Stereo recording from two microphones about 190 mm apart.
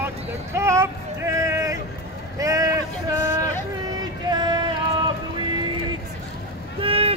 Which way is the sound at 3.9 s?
20° right (ahead or behind).